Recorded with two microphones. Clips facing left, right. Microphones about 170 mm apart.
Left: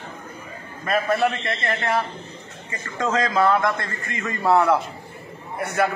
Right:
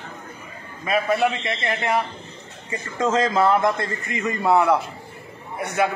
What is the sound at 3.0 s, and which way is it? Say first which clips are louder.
A man's voice: right 1 dB; 25° right (ahead or behind).